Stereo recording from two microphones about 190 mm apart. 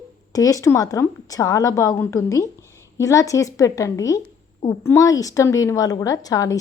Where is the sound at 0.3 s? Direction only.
15° left (ahead or behind).